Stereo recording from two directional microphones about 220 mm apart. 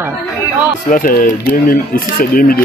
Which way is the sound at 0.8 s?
40° left (ahead or behind).